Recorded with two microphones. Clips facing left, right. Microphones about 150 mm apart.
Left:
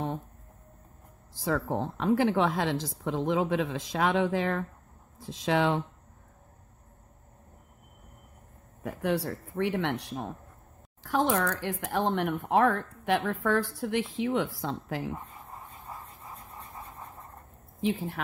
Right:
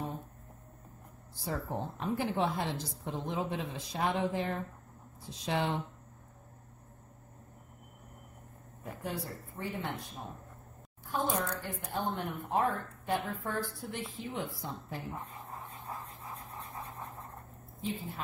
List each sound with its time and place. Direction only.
1.3 s a woman's voice: 90° left
8.8 s speech: 75° left (ahead or behind)
11.1 s speech: 90° left
15.3 s dog: centre (ahead or behind)
16.5 s vehicle: centre (ahead or behind)
17.8 s speech: 85° left